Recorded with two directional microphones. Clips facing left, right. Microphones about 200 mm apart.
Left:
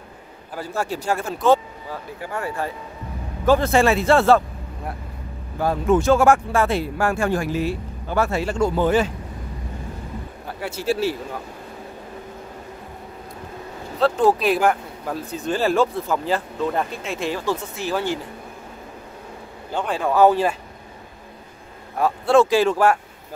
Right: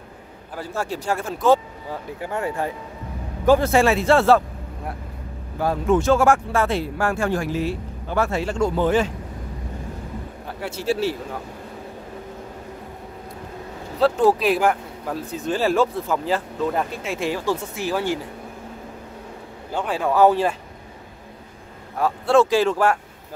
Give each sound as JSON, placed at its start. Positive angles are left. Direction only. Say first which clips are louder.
{"t": 0.6, "sound": "speech", "louder": "left 1 dB", "side_deg": 10}
{"t": 1.9, "sound": "speech", "louder": "right 2 dB", "side_deg": -20}
{"t": 5.6, "sound": "speech", "louder": "left 1 dB", "side_deg": 0}
{"t": 10.6, "sound": "speech", "louder": "even", "side_deg": 5}
{"t": 13.9, "sound": "speech", "louder": "even", "side_deg": -5}
{"t": 19.7, "sound": "speech", "louder": "even", "side_deg": -5}
{"t": 22.0, "sound": "speech", "louder": "left 1 dB", "side_deg": 15}